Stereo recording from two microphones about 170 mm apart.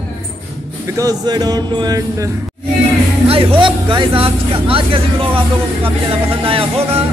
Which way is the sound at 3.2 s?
30° right (ahead or behind).